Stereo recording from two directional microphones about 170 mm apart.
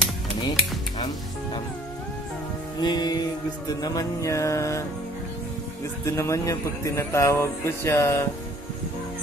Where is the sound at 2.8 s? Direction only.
25° left (ahead or behind).